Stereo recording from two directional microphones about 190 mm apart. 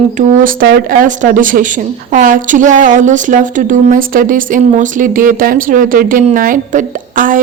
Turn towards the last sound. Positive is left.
turn(degrees=-45)  # may be behind; listen again after turning